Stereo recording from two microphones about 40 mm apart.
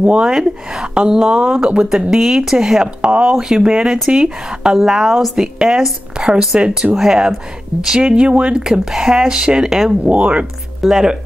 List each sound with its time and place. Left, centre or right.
0.2 s speech: centre
3.0 s speech: right
3.3 s speech: centre
4.7 s speech: centre
5.6 s speech: centre
8.0 s speech: right
8.6 s speech: centre
10.0 s speech: right
10.8 s speech: centre